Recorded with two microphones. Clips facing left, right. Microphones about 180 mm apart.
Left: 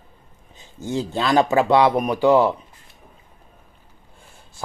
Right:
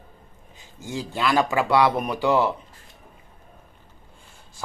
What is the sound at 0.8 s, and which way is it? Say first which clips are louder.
Speech: left 3 dB; 25° left (ahead or behind).